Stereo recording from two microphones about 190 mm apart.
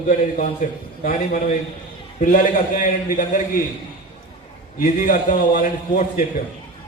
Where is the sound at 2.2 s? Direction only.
45° left (ahead or behind).